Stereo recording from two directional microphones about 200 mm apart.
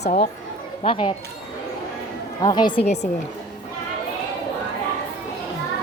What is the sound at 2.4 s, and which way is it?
Speech, 20° left (ahead or behind).